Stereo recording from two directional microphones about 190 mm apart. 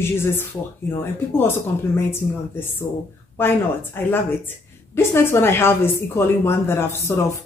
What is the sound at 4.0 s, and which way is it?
A woman's voice, 10° left (ahead or behind).